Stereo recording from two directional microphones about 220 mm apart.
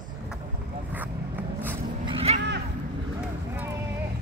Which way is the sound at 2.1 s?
25° right (ahead or behind).